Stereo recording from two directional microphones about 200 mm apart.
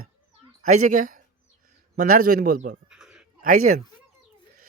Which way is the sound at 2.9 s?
5° right (ahead or behind).